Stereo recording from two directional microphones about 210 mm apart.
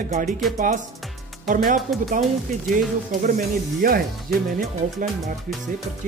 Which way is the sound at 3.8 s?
45° right (ahead or behind).